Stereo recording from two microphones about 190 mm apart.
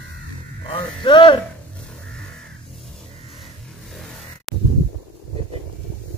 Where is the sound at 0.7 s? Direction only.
25° left (ahead or behind).